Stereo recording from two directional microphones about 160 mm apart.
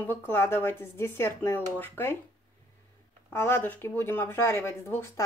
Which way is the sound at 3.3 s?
15° left (ahead or behind).